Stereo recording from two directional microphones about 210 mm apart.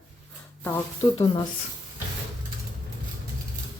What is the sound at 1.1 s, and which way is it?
Speech, 25° left (ahead or behind).